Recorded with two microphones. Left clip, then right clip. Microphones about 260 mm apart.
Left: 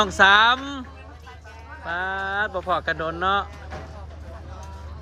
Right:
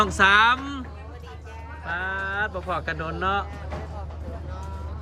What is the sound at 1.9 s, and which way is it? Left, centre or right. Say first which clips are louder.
Speech: left 2 dB; centre.